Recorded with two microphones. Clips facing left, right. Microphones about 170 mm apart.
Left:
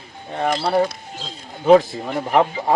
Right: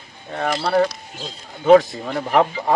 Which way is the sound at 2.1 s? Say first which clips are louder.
Even; 5° left (ahead or behind).